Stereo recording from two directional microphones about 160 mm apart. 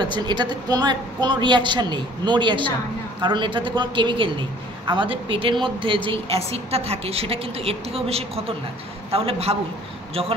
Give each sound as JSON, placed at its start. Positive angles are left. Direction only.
{"t": 0.0, "sound": "a woman's voice", "side_deg": -30}